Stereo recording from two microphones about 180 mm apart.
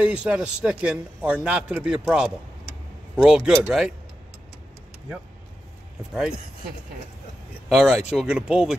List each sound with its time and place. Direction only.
0.0 s a man's voice: 5° right (ahead or behind)
7.7 s a man's voice: 5° right (ahead or behind)